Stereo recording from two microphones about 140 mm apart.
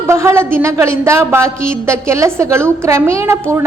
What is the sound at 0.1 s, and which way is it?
A woman's voice, 20° right (ahead or behind).